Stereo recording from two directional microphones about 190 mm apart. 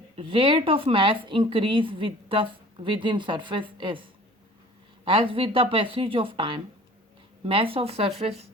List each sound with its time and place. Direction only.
0.2 s a woman's voice: 25° right (ahead or behind)
5.0 s a woman's voice: 25° right (ahead or behind)